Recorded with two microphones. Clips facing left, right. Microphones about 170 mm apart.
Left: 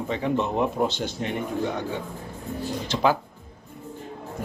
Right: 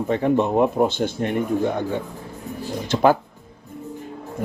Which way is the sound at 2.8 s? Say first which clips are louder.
Right 6 dB; 50° right (ahead or behind).